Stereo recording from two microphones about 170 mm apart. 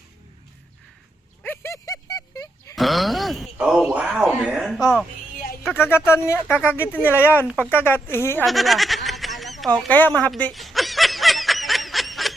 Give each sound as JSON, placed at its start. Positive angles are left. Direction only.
{"t": 1.4, "sound": "dog", "side_deg": 15}
{"t": 2.7, "sound": "a sound", "side_deg": 0}
{"t": 4.3, "sound": "speech", "side_deg": -5}
{"t": 5.7, "sound": "speech", "side_deg": 15}
{"t": 8.4, "sound": "a sound", "side_deg": 0}
{"t": 9.7, "sound": "snicker", "side_deg": 5}